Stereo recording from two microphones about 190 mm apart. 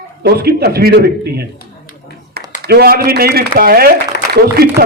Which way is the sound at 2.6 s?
55° right (ahead or behind).